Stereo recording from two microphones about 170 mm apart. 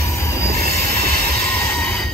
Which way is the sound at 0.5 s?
60° right (ahead or behind).